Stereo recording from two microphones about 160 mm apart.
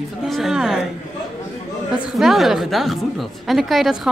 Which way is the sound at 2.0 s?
Centre (ahead or behind).